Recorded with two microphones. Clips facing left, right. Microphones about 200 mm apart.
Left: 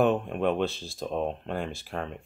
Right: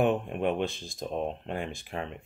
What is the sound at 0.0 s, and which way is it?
Speech, 15° right (ahead or behind).